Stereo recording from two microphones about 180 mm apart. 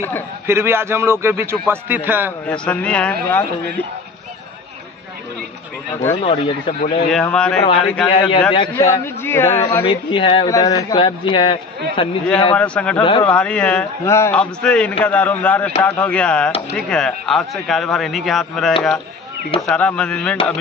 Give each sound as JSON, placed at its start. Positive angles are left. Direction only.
{"t": 0.5, "sound": "a man's voice", "side_deg": -15}
{"t": 2.4, "sound": "a man's voice", "side_deg": 5}
{"t": 6.2, "sound": "speech", "side_deg": 35}
{"t": 7.1, "sound": "a man's voice", "side_deg": 5}
{"t": 8.1, "sound": "speech", "side_deg": 30}
{"t": 8.8, "sound": "a man's voice", "side_deg": 15}
{"t": 9.8, "sound": "speech", "side_deg": 25}
{"t": 12.5, "sound": "a man's voice", "side_deg": 5}